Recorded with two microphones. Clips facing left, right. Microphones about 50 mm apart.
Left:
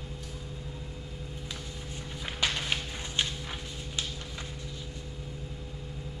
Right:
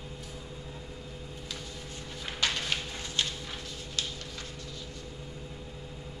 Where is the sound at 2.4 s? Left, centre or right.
Centre.